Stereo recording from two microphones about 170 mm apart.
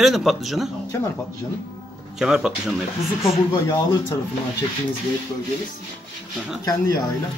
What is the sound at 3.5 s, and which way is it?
Speech, 25° left (ahead or behind).